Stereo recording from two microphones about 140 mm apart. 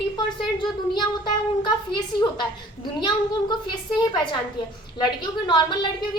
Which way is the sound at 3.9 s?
35° left (ahead or behind).